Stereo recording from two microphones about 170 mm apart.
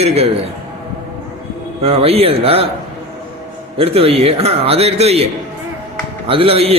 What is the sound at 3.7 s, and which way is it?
A man's voice, 35° right (ahead or behind).